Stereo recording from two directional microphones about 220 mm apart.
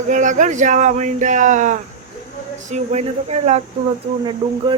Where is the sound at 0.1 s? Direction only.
35° right (ahead or behind).